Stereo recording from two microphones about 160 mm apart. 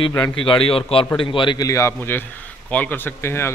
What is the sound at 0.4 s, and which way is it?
A man's voice, 35° left (ahead or behind).